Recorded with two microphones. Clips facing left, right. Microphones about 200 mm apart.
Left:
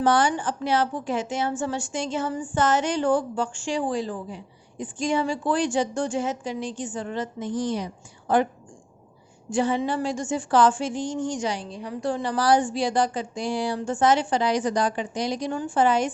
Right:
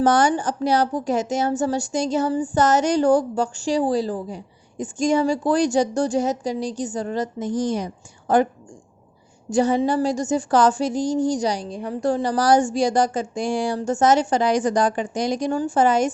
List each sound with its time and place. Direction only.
0.0 s a woman's voice: 45° right (ahead or behind)
9.5 s speech: 40° right (ahead or behind)